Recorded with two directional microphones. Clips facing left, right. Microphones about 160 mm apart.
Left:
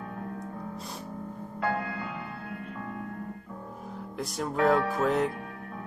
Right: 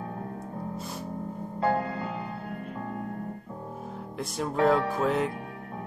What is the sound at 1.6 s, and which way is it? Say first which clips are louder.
Music: right 4 dB; 30° right (ahead or behind).